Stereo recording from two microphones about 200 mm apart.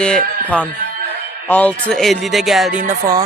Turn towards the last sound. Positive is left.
turn(degrees=-15)  # may be behind; listen again after turning